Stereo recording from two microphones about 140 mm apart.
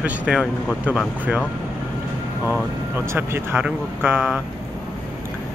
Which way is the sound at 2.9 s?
15° right (ahead or behind).